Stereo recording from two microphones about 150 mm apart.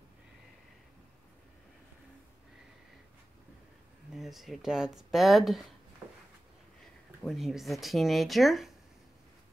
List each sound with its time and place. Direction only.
4.1 s speech: centre (ahead or behind)
6.8 s speech: centre (ahead or behind)